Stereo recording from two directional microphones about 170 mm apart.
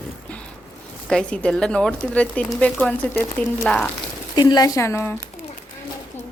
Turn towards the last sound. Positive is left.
turn(degrees=15)  # may be behind; listen again after turning